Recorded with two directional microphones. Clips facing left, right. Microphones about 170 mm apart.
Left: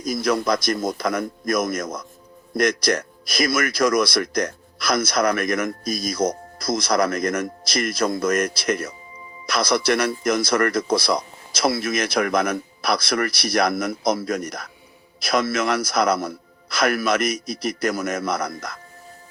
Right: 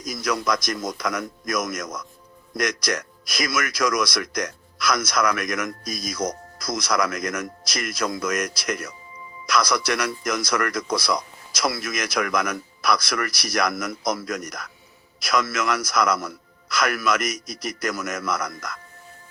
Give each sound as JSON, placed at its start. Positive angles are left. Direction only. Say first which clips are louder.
{"t": 0.0, "sound": "a man's voice", "louder": "left 4 dB", "side_deg": 30}
{"t": 5.9, "sound": "speech", "louder": "left 5 dB", "side_deg": 55}
{"t": 6.1, "sound": "a man's voice", "louder": "left 5 dB", "side_deg": 30}